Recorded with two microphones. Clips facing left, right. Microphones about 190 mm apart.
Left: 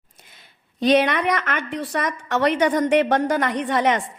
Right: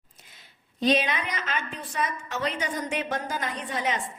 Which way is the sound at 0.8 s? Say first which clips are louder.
Left 7 dB; 70° left (ahead or behind).